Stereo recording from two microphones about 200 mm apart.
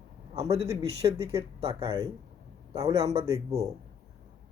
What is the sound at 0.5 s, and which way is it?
Speech, 30° right (ahead or behind).